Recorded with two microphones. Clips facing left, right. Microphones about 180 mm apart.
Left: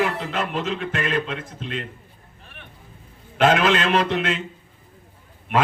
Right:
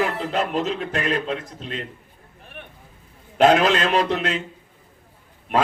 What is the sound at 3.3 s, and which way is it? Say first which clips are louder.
Speech: right 2 dB; 40° right (ahead or behind).